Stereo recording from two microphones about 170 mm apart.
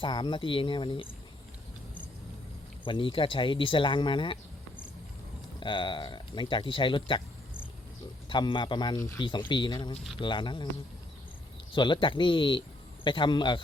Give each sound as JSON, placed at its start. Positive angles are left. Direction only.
{"t": 0.0, "sound": "speech", "side_deg": 25}
{"t": 2.8, "sound": "speech", "side_deg": 30}
{"t": 5.5, "sound": "speech", "side_deg": 30}
{"t": 8.3, "sound": "speech", "side_deg": 30}
{"t": 11.7, "sound": "speech", "side_deg": 30}